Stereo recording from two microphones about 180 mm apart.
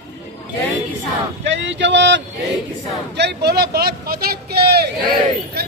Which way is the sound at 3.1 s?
70° right (ahead or behind).